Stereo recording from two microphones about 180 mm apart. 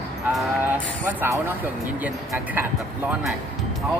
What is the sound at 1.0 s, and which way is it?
Speech, 10° right (ahead or behind).